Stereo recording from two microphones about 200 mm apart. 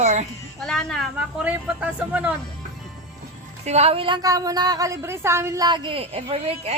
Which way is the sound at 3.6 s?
30° right (ahead or behind).